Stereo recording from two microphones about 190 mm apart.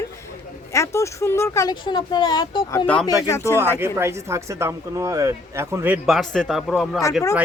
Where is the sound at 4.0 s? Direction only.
15° right (ahead or behind).